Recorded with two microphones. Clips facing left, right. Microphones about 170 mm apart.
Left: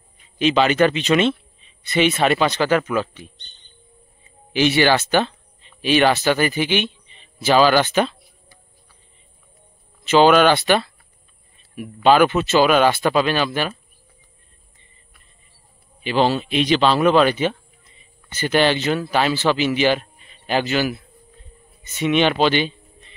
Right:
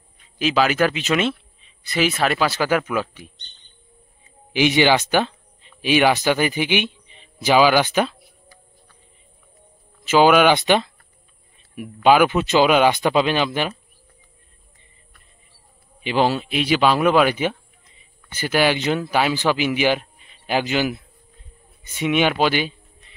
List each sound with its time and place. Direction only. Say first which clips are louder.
0.2 s speech: left 2 dB; 5° right (ahead or behind)
4.5 s speech: even; 15° right (ahead or behind)
10.0 s speech: left 1 dB; 10° right (ahead or behind)
16.0 s a man's voice: left 1 dB; 15° right (ahead or behind)
22.4 s a sound: left 2 dB; 10° right (ahead or behind)